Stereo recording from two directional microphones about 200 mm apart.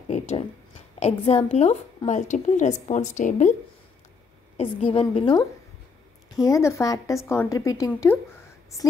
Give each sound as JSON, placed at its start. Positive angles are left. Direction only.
{"t": 0.1, "sound": "a woman's voice", "side_deg": 30}
{"t": 4.6, "sound": "a woman's voice", "side_deg": 30}